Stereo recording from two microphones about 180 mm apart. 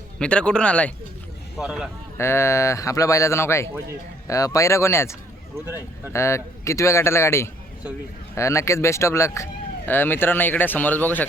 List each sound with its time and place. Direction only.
0.2 s speech: 5° left (ahead or behind)
1.5 s speech: 5° right (ahead or behind)
2.1 s speech: 15° left (ahead or behind)
6.1 s speech: 15° left (ahead or behind)